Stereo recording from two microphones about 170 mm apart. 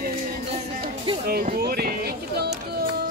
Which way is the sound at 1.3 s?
65° right (ahead or behind).